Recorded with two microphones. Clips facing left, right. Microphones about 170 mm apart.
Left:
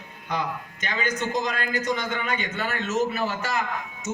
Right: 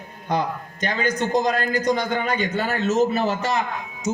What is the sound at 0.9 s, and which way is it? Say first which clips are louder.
Speech: right 5 dB; 40° right (ahead or behind).